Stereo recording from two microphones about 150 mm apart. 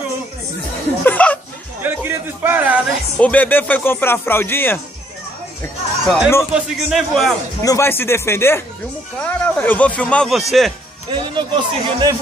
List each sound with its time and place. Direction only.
1.0 s a sound: 10° left (ahead or behind)
1.8 s a sound: 15° right (ahead or behind)
3.2 s speech: 10° left (ahead or behind)
6.0 s speech: centre (ahead or behind)
7.6 s speech: 20° left (ahead or behind); by 10.7 s centre (ahead or behind)
11.1 s speech: 30° right (ahead or behind)